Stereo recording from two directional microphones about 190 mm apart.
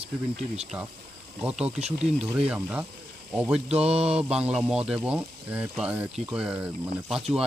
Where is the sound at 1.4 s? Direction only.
5° right (ahead or behind).